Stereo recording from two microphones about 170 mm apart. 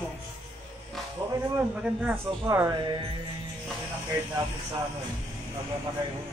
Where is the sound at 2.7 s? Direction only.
25° right (ahead or behind).